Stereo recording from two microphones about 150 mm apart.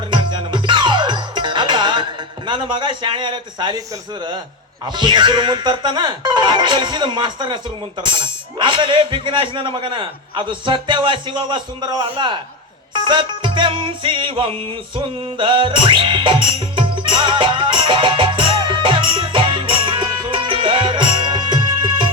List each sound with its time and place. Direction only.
0.1 s music: 30° right (ahead or behind)
2.5 s speech: 30° right (ahead or behind)
4.9 s speech: 30° right (ahead or behind)
14.9 s music: 35° right (ahead or behind)